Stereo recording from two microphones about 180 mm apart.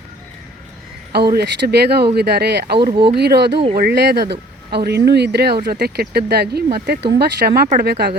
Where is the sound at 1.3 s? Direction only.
65° right (ahead or behind).